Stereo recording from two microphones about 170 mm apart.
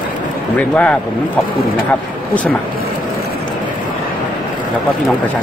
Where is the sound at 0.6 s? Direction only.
5° left (ahead or behind).